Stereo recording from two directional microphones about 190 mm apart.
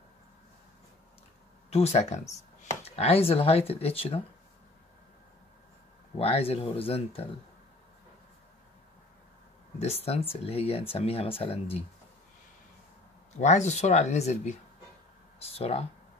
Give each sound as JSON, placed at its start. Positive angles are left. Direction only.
{"t": 1.7, "sound": "speech", "side_deg": 35}
{"t": 6.1, "sound": "speech", "side_deg": 30}
{"t": 9.8, "sound": "speech", "side_deg": 35}
{"t": 13.4, "sound": "speech", "side_deg": 40}